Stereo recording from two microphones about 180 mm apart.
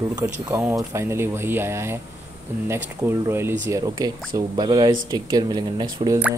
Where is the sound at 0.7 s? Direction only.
15° right (ahead or behind).